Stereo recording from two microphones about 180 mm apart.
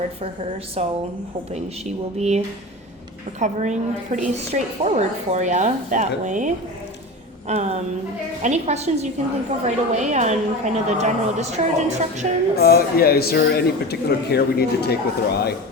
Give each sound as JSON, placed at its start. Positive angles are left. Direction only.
{"t": 0.8, "sound": "a woman's voice", "side_deg": -35}
{"t": 2.1, "sound": "a woman's voice", "side_deg": -40}
{"t": 3.4, "sound": "a woman's voice", "side_deg": -45}
{"t": 12.5, "sound": "speech", "side_deg": 60}